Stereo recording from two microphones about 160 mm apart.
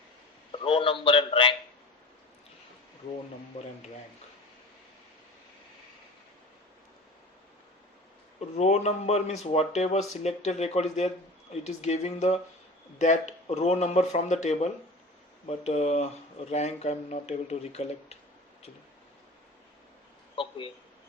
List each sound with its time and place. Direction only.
0.6 s a man's voice: 35° left (ahead or behind)
8.5 s a man's voice: 45° left (ahead or behind)
20.3 s a sound: 30° left (ahead or behind)